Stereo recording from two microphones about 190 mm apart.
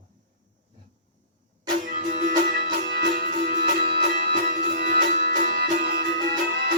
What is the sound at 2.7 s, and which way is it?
Music, 60° right (ahead or behind).